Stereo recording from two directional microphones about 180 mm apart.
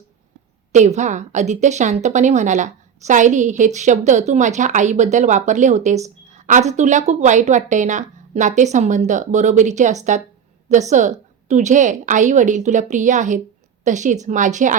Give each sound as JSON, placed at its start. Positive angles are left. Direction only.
{"t": 0.7, "sound": "a woman's voice", "side_deg": -40}